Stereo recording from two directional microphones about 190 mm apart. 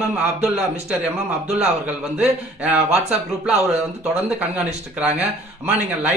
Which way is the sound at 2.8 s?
35° right (ahead or behind).